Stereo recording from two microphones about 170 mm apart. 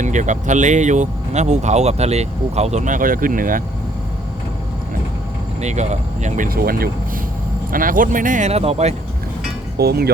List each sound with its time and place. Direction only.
0.0 s speech: 45° right (ahead or behind)
5.5 s speech: 45° right (ahead or behind)
9.7 s speech: 70° right (ahead or behind)